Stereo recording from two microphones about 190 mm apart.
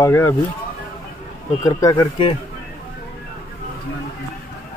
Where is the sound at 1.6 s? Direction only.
20° left (ahead or behind).